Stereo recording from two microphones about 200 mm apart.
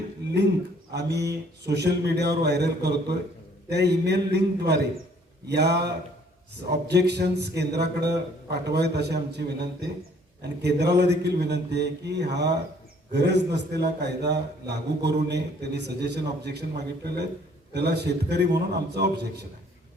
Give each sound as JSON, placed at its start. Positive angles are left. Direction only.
{"t": 0.9, "sound": "a man's voice", "side_deg": -55}